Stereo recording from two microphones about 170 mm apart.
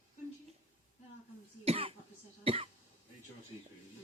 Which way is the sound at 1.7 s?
30° right (ahead or behind).